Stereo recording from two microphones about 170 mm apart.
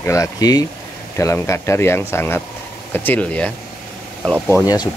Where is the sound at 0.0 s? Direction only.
20° left (ahead or behind).